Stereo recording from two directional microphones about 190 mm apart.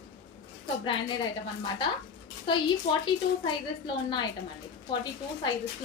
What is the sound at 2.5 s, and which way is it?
Speech, 25° left (ahead or behind).